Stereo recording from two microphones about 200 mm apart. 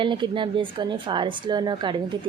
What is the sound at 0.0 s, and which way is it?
Speech, 25° right (ahead or behind).